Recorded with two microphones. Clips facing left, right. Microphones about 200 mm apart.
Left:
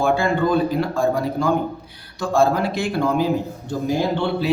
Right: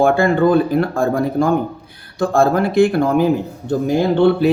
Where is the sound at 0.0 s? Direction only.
55° right (ahead or behind).